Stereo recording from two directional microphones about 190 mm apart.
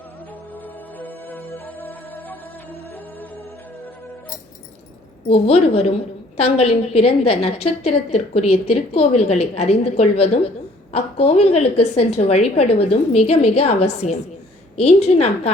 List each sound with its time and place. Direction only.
0.5 s music: 10° left (ahead or behind)
5.3 s a woman's voice: 30° left (ahead or behind)